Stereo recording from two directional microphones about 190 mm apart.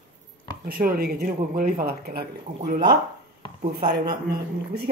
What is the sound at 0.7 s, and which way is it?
Speech, 50° right (ahead or behind).